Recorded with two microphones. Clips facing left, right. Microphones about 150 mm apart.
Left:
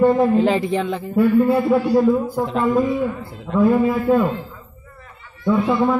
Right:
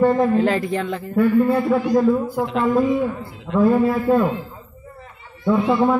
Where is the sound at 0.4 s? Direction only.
20° left (ahead or behind).